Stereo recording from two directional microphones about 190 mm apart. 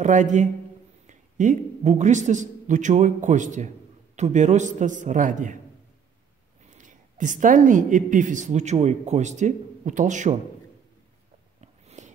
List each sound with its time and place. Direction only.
0.0 s a man's voice: 40° right (ahead or behind)
6.7 s a woman's voice: 40° right (ahead or behind)
11.6 s a sound: 35° right (ahead or behind)